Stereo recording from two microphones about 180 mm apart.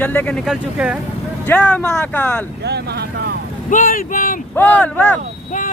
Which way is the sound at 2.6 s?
65° right (ahead or behind).